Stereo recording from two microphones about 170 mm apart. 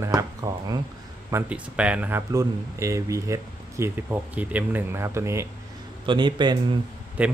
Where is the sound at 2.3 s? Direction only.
20° right (ahead or behind).